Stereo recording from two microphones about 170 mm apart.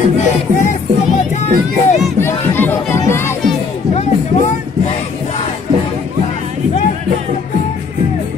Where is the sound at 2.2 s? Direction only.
15° left (ahead or behind).